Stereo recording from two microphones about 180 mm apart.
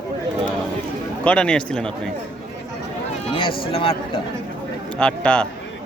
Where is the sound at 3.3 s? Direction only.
30° left (ahead or behind).